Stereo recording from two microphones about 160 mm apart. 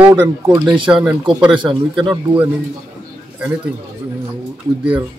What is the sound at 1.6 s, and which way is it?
Speech, 30° right (ahead or behind).